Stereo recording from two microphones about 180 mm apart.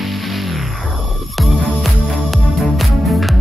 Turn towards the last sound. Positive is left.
turn(degrees=0)  # may be behind; listen again after turning